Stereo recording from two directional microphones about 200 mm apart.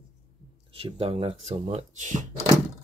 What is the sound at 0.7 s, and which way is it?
Speech, 25° right (ahead or behind).